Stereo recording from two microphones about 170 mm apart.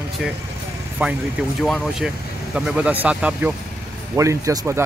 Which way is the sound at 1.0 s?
5° right (ahead or behind).